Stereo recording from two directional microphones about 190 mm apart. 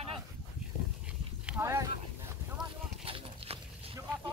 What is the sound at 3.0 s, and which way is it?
Clip-clop, 30° right (ahead or behind).